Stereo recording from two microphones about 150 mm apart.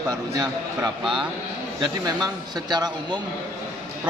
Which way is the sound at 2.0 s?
25° right (ahead or behind).